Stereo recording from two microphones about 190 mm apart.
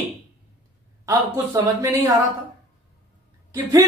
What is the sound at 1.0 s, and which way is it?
Speech, 15° right (ahead or behind).